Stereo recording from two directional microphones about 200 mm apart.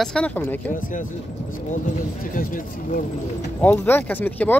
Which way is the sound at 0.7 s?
40° left (ahead or behind).